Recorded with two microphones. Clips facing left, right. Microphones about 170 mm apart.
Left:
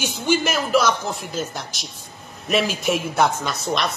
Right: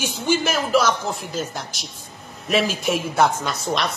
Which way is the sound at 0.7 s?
5° right (ahead or behind).